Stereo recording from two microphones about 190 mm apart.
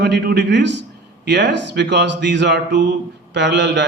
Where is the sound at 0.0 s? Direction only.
60° right (ahead or behind).